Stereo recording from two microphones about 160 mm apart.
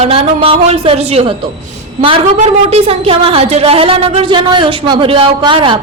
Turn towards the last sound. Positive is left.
turn(degrees=-30)  # may be behind; listen again after turning